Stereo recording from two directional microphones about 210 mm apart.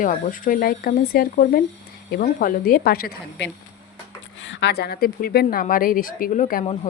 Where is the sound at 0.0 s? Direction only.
40° left (ahead or behind).